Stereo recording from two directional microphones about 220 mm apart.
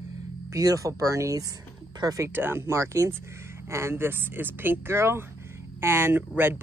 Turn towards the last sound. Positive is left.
turn(degrees=-10)  # may be behind; listen again after turning